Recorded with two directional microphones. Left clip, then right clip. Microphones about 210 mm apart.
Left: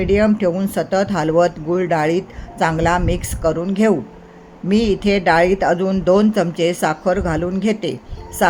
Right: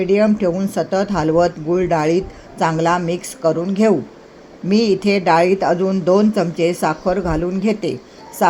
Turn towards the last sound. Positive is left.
turn(degrees=5)  # may be behind; listen again after turning